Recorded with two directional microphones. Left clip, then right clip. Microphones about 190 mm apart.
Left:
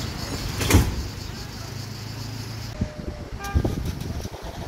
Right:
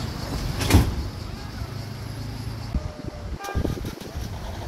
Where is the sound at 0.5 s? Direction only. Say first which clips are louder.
Left 1 dB; 40° right (ahead or behind).